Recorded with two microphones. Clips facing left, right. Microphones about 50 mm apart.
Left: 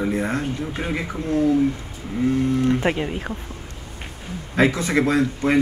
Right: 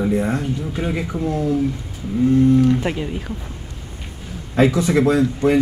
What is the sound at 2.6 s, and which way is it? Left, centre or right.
Speech, left.